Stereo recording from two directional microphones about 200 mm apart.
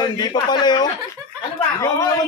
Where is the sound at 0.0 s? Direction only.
20° left (ahead or behind).